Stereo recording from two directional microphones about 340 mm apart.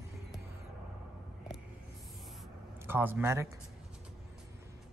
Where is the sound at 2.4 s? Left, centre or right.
Centre.